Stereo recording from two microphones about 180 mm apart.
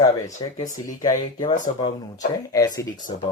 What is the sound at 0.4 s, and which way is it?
Speech, 25° left (ahead or behind).